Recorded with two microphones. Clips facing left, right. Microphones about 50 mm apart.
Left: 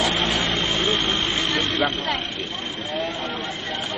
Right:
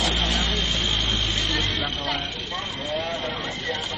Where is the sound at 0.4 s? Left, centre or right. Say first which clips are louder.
Left 3 dB; left.